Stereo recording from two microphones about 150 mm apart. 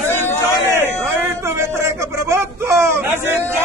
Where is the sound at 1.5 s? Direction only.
20° right (ahead or behind).